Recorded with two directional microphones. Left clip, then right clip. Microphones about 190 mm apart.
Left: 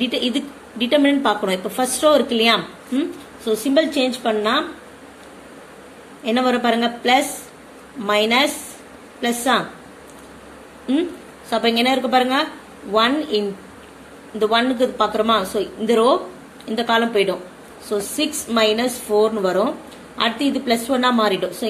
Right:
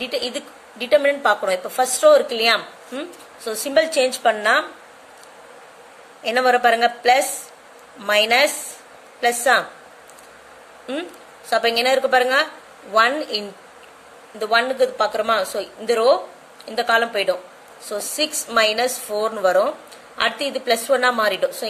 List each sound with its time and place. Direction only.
0.0 s a woman's voice: 20° right (ahead or behind); by 4.6 s 35° right (ahead or behind)
6.2 s a woman's voice: 30° right (ahead or behind)
11.5 s a woman's voice: 25° right (ahead or behind)
14.4 s a woman's voice: 25° right (ahead or behind)